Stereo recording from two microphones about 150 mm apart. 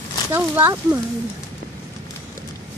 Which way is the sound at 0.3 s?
15° right (ahead or behind).